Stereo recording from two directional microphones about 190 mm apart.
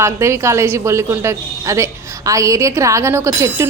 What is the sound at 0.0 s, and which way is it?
A woman's voice, 15° right (ahead or behind).